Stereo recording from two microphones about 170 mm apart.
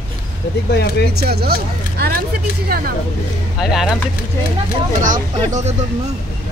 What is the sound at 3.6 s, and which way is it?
Speech, 5° right (ahead or behind).